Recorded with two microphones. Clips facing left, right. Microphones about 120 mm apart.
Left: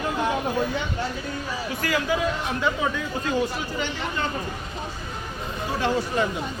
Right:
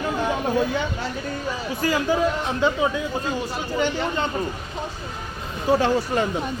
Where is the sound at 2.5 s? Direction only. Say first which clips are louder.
Right 5 dB; 25° right (ahead or behind).